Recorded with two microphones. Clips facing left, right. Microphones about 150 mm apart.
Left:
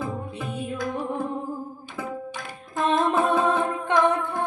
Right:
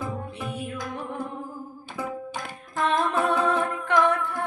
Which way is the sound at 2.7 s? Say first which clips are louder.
Left 2 dB; 20° left (ahead or behind).